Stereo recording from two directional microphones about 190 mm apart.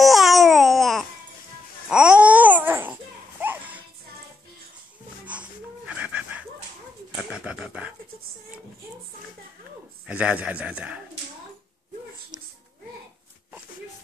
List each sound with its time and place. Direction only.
0.0 s babbling: centre (ahead or behind)
5.2 s wheeze: 5° right (ahead or behind)
7.2 s bird: 5° right (ahead or behind)
10.0 s a man's voice: 5° right (ahead or behind)
12.3 s a sound: 5° right (ahead or behind)